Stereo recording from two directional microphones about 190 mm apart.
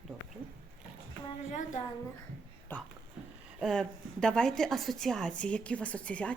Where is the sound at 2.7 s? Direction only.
10° left (ahead or behind).